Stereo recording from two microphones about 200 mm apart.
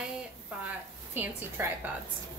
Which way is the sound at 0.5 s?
5° right (ahead or behind).